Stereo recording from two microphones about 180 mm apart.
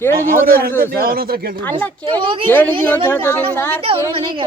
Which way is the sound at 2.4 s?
10° left (ahead or behind).